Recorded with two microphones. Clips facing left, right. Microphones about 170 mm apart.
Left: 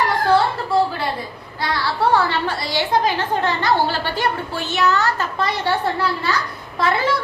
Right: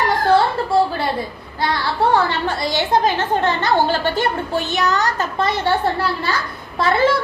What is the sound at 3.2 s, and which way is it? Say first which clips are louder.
A child's voice: right 2 dB; 25° right (ahead or behind).